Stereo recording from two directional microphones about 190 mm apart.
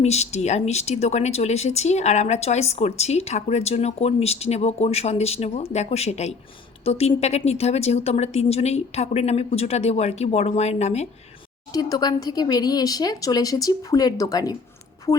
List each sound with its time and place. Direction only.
0.0 s speech: 35° left (ahead or behind)
11.7 s speech: 20° left (ahead or behind)